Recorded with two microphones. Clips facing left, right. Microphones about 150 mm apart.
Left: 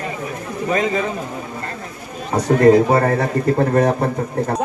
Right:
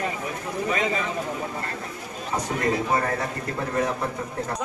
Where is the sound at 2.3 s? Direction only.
70° left (ahead or behind).